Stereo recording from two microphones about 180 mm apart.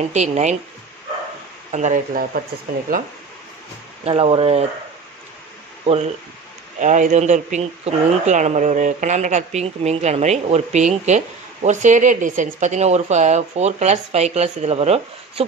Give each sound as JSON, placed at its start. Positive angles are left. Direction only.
{"t": 0.1, "sound": "speech", "side_deg": -40}
{"t": 1.7, "sound": "speech", "side_deg": -40}
{"t": 4.0, "sound": "speech", "side_deg": -30}
{"t": 6.8, "sound": "speech", "side_deg": -45}